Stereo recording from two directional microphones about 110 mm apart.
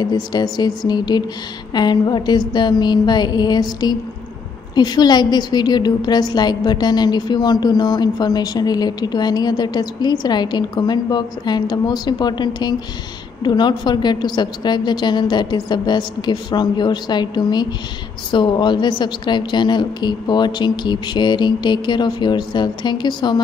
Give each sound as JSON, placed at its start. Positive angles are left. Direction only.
{"t": 0.0, "sound": "a woman's voice", "side_deg": 40}